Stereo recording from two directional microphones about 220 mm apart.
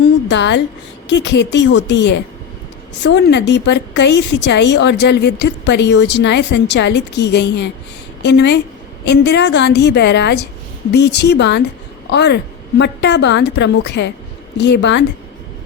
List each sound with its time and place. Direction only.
0.3 s a woman's voice: 55° left (ahead or behind)